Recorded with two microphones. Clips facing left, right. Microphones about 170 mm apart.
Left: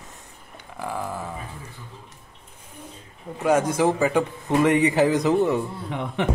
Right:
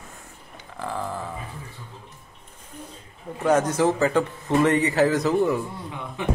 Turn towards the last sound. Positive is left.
turn(degrees=70)  # may be behind; listen again after turning